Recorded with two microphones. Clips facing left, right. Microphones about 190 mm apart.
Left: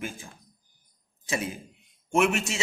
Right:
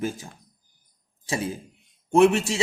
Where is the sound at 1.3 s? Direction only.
30° right (ahead or behind).